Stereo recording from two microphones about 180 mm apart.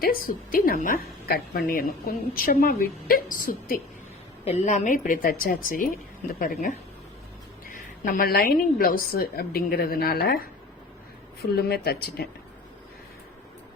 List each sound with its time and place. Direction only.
0.0 s a woman's voice: 55° left (ahead or behind)
4.4 s a woman's voice: 40° left (ahead or behind); by 12.3 s 60° left (ahead or behind)